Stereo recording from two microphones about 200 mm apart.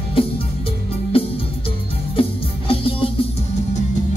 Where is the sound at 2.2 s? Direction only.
25° left (ahead or behind).